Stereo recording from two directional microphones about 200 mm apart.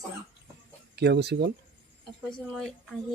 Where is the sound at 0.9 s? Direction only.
55° right (ahead or behind).